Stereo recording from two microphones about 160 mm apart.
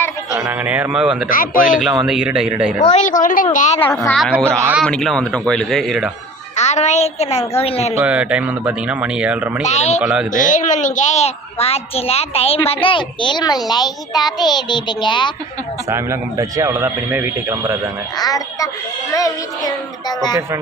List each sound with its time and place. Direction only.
0.3 s speech: 15° right (ahead or behind)
1.3 s a woman's voice: 60° left (ahead or behind)
1.8 s speech: centre (ahead or behind)
2.7 s a woman's voice: 45° left (ahead or behind)
4.4 s speech: 15° right (ahead or behind)
4.8 s speech: centre (ahead or behind)
6.6 s a woman's voice: 45° left (ahead or behind)
7.9 s speech: 10° right (ahead or behind)
9.6 s a child's voice: 45° left (ahead or behind)
10.0 s speech: 5° right (ahead or behind)
10.3 s a child's voice: 55° left (ahead or behind); by 15.3 s 30° left (ahead or behind)
15.9 s speech: 20° right (ahead or behind)
18.2 s a child's voice: 20° left (ahead or behind)